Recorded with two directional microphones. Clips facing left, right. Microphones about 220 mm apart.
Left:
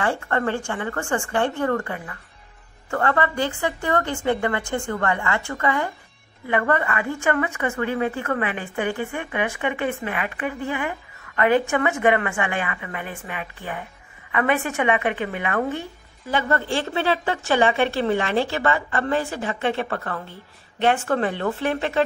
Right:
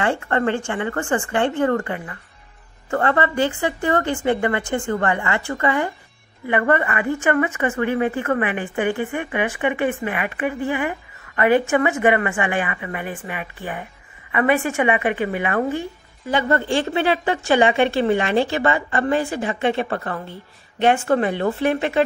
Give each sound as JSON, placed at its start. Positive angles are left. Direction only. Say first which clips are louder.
{"t": 0.0, "sound": "a woman's voice", "louder": "right 3 dB", "side_deg": -20}